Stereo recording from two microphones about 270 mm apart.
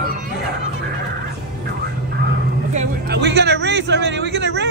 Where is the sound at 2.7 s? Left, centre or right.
Right.